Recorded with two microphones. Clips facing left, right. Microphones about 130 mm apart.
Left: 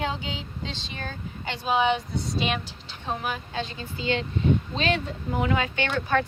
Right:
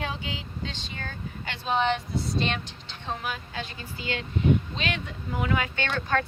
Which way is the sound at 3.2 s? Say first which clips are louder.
Left 3 dB; 20° left (ahead or behind).